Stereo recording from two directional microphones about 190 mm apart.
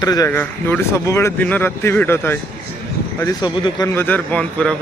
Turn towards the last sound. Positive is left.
turn(degrees=5)  # may be behind; listen again after turning